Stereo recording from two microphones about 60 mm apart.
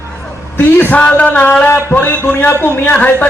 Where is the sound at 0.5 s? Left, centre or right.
Left.